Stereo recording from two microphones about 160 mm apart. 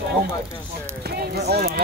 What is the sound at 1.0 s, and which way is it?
Speech, 85° right.